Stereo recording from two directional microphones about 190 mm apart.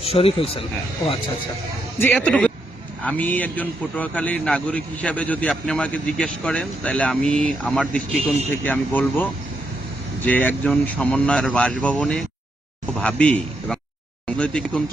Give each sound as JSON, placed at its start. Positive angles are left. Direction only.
{"t": 0.0, "sound": "a man's voice", "side_deg": 30}
{"t": 2.0, "sound": "a man's voice", "side_deg": 10}